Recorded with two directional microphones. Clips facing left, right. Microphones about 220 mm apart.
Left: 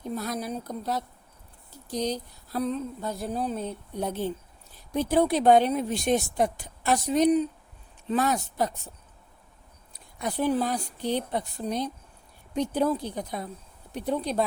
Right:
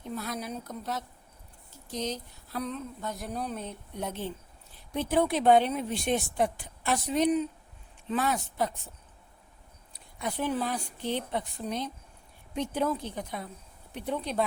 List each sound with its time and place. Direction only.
0.1 s a woman's voice: 40° left (ahead or behind)
9.9 s a woman's voice: 40° left (ahead or behind)